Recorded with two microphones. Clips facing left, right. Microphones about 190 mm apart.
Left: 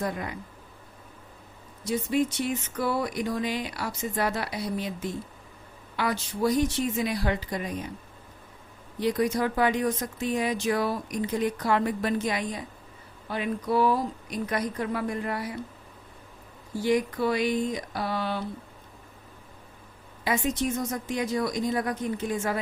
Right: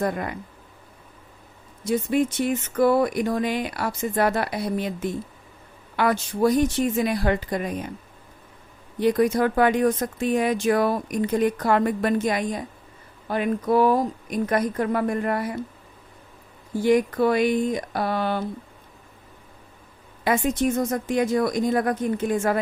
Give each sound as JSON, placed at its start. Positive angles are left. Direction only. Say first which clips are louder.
{"t": 0.0, "sound": "speech", "louder": "right 5 dB", "side_deg": -55}
{"t": 1.8, "sound": "speech", "louder": "right 4 dB", "side_deg": -55}
{"t": 9.0, "sound": "speech", "louder": "right 5 dB", "side_deg": -55}
{"t": 16.7, "sound": "speech", "louder": "right 6 dB", "side_deg": -55}
{"t": 20.2, "sound": "speech", "louder": "right 5 dB", "side_deg": -50}